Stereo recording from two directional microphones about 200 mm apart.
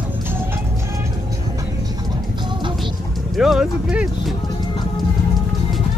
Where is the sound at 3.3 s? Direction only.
Centre (ahead or behind).